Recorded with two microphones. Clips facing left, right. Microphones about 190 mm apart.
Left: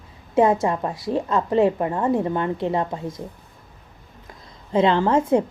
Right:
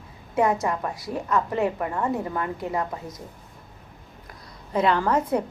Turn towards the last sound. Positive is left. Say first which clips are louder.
# left 4 dB
turn(degrees=25)  # may be behind; listen again after turning